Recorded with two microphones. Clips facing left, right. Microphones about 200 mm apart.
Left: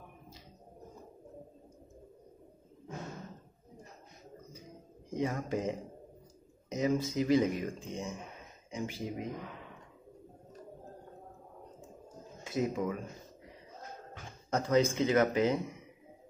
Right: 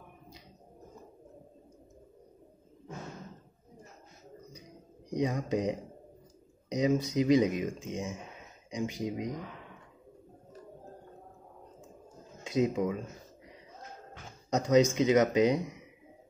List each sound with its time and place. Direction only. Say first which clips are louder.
5.1 s speech: right 3 dB; 20° right (ahead or behind)
12.4 s speech: right 4 dB; 20° right (ahead or behind)
14.5 s speech: right 4 dB; 15° right (ahead or behind)